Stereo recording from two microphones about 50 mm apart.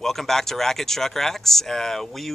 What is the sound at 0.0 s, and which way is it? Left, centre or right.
Speech, centre.